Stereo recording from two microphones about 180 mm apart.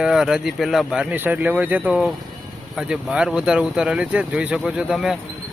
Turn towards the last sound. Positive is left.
turn(degrees=-5)  # may be behind; listen again after turning